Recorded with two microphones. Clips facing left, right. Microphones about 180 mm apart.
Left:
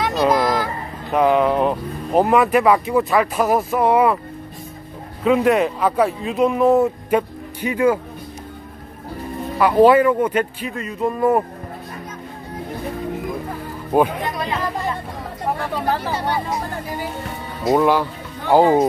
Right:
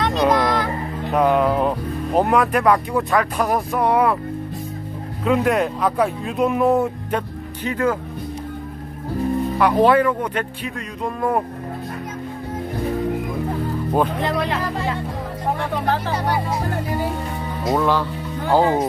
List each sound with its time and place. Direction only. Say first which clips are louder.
0.0 s music: even; 5° left (ahead or behind)
1.1 s speech: left 1 dB; centre (ahead or behind)
5.2 s speech: left 3 dB; centre (ahead or behind)
9.6 s speech: left 4 dB; 5° left (ahead or behind)
13.9 s speech: left 4 dB; 10° left (ahead or behind)
14.2 s speech: right 2 dB; 80° right
17.6 s speech: left 3 dB; 15° left (ahead or behind)